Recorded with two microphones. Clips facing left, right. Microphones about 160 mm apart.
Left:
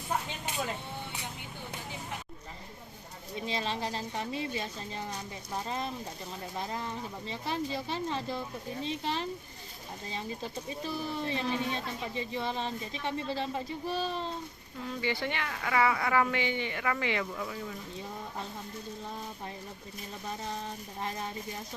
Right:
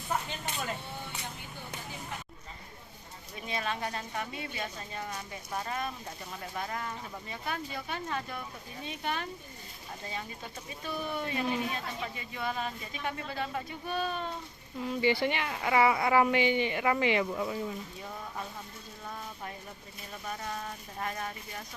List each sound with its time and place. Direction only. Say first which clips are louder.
3.3 s speech: left 1 dB; 30° left (ahead or behind)
10.8 s speech: right 1 dB; 30° left (ahead or behind)
14.8 s speech: right 5 dB; 15° right (ahead or behind)
20.4 s speech: left 1 dB; 25° left (ahead or behind)